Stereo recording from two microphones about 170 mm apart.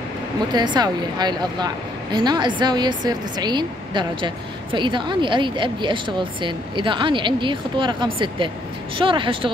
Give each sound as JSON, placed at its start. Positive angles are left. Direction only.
{"t": 0.5, "sound": "a woman's voice", "side_deg": -25}